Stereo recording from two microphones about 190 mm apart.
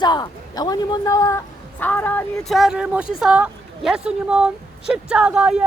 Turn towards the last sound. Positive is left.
turn(degrees=-5)  # may be behind; listen again after turning